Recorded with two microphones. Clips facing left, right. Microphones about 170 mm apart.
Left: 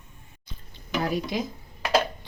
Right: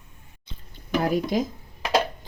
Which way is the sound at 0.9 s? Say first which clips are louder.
Right 4 dB; 50° right (ahead or behind).